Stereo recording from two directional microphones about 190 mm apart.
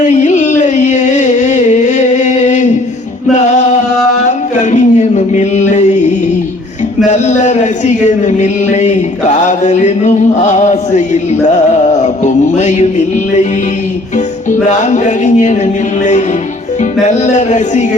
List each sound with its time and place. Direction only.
0.0 s music: 40° left (ahead or behind)
4.5 s a sound: 40° left (ahead or behind)
7.1 s speech: 40° left (ahead or behind)
14.7 s music: 40° left (ahead or behind)